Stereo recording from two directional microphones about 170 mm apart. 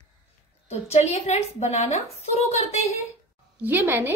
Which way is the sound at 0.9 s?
40° left (ahead or behind).